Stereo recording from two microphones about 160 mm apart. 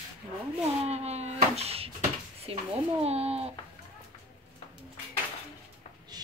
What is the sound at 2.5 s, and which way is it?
Speech, 35° right (ahead or behind).